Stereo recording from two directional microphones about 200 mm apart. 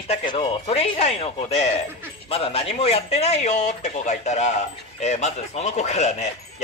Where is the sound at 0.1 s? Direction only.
25° left (ahead or behind).